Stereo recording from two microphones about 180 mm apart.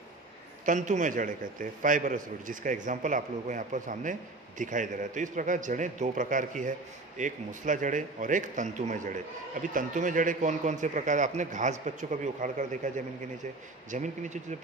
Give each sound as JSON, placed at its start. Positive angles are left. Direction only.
{"t": 0.7, "sound": "a man's voice", "side_deg": -45}